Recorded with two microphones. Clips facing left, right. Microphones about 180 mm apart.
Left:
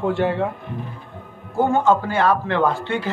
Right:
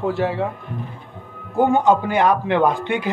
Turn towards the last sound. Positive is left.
turn(degrees=-15)  # may be behind; listen again after turning